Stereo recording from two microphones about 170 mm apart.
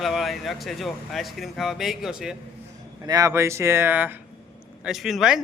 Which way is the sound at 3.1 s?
20° right (ahead or behind).